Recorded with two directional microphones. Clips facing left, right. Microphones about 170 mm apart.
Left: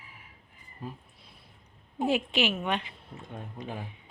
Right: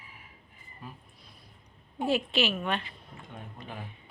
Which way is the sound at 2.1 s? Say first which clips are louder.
Even; 15° left (ahead or behind).